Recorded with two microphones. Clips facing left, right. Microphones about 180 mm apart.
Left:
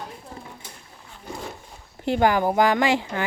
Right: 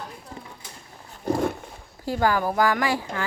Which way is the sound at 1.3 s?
60° right (ahead or behind).